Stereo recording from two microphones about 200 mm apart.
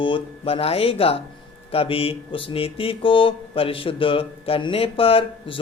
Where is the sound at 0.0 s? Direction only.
25° left (ahead or behind).